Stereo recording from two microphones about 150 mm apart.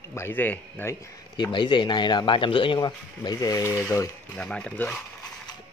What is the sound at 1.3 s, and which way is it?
A man's voice, 30° left (ahead or behind).